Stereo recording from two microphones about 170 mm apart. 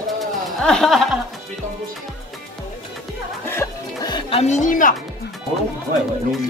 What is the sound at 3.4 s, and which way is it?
Music, 15° left (ahead or behind).